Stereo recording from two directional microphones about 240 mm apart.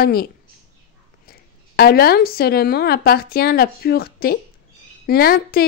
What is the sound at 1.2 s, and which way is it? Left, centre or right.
Speech, left.